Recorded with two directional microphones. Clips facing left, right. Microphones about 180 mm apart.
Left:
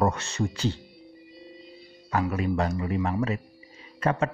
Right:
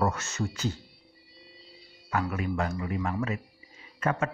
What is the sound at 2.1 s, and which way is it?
A man's voice, 30° left (ahead or behind).